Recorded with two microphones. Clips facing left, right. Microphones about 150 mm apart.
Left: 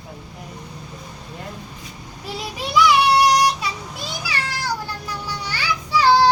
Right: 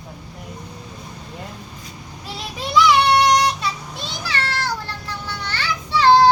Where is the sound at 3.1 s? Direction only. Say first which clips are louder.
Even; 10° left (ahead or behind).